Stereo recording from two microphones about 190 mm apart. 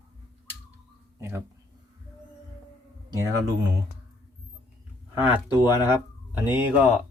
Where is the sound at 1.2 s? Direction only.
15° right (ahead or behind).